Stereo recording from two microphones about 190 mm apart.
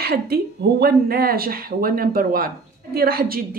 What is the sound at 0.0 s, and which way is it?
Speech, 55° right (ahead or behind).